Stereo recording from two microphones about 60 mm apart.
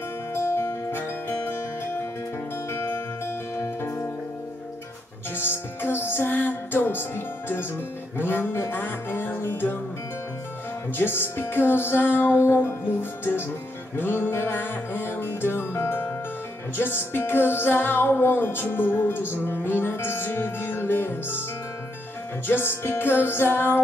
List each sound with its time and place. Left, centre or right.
0.3 s music: left
5.3 s music: left
11.0 s music: left
22.5 s music: left